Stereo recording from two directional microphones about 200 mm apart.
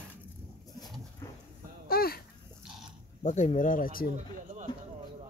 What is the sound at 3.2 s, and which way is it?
Speech, 35° left (ahead or behind).